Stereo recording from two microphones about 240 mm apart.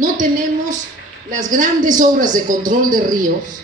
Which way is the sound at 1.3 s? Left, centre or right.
Right.